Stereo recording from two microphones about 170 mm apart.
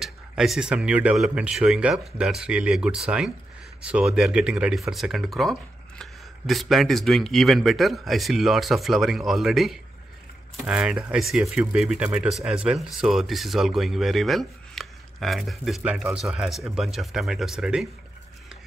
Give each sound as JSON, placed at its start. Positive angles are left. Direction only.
{"t": 0.0, "sound": "speech", "side_deg": 0}